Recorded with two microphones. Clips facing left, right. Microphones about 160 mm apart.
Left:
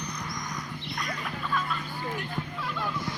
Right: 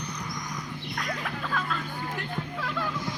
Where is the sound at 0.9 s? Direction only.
70° right (ahead or behind).